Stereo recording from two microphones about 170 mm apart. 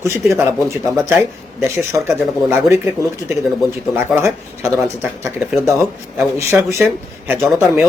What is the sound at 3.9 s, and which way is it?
Speech, 15° right (ahead or behind).